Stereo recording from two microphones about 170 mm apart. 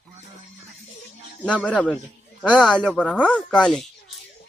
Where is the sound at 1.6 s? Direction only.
5° left (ahead or behind).